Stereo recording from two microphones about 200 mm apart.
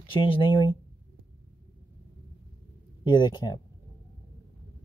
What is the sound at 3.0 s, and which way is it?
Speech, 20° left (ahead or behind).